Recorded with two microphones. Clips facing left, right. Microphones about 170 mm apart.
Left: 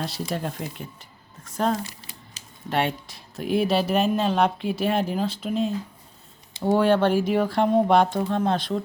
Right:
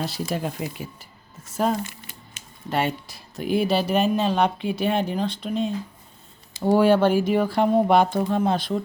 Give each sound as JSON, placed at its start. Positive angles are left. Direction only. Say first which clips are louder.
{"t": 0.0, "sound": "speech", "louder": "right 2 dB", "side_deg": 0}
{"t": 1.8, "sound": "speech", "louder": "right 2 dB", "side_deg": 35}
{"t": 2.6, "sound": "speech", "louder": "even", "side_deg": 0}